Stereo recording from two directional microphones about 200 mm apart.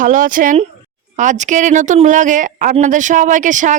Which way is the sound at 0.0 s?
40° right (ahead or behind).